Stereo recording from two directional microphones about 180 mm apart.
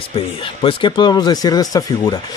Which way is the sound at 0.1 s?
30° left (ahead or behind).